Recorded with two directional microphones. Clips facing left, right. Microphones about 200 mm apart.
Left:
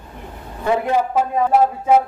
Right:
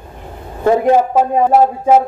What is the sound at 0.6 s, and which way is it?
A man's voice, 45° right (ahead or behind).